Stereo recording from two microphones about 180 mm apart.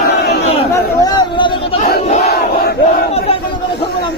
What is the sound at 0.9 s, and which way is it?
Chatter, 25° left (ahead or behind).